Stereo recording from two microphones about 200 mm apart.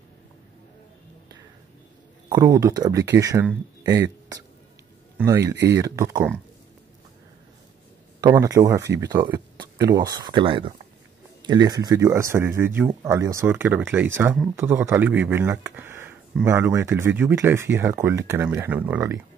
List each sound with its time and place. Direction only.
2.2 s speech: 20° right (ahead or behind)
8.2 s speech: 20° right (ahead or behind)